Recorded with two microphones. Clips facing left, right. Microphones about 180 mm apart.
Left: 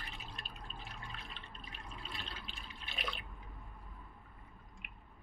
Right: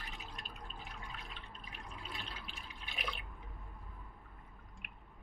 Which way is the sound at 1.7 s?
10° right (ahead or behind).